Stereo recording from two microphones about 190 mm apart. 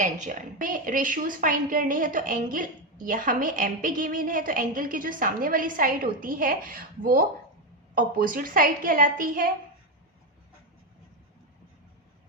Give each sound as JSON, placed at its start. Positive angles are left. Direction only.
{"t": 0.0, "sound": "a woman's voice", "side_deg": -40}